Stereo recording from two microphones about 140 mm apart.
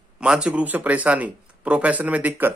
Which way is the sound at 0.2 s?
5° right (ahead or behind).